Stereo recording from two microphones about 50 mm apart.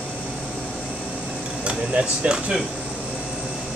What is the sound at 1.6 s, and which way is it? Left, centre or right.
Speech, right.